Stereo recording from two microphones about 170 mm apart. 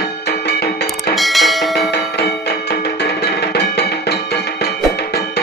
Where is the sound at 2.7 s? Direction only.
70° left (ahead or behind).